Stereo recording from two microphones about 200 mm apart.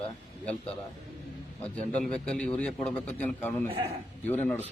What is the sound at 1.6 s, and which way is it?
A man's voice, 5° left (ahead or behind).